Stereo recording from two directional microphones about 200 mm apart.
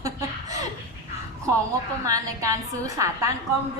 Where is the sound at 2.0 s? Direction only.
15° right (ahead or behind).